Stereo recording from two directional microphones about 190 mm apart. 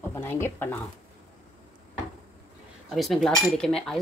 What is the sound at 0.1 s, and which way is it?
Speech, 10° left (ahead or behind).